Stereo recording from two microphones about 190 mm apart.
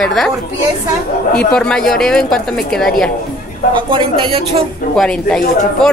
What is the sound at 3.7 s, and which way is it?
Speech, 25° right (ahead or behind).